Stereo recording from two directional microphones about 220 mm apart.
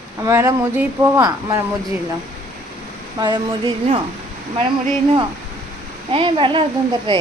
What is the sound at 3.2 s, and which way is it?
Speech, 20° right (ahead or behind).